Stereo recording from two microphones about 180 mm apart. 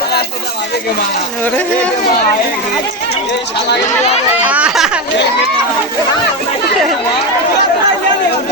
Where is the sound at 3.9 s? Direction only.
35° left (ahead or behind).